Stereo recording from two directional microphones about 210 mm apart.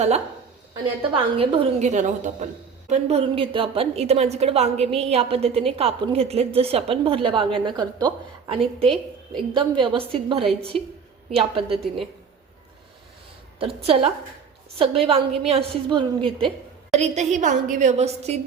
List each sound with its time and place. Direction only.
0.7 s a woman's voice: 25° right (ahead or behind)
11.3 s a woman's voice: 25° right (ahead or behind)
13.6 s a woman's voice: 25° right (ahead or behind)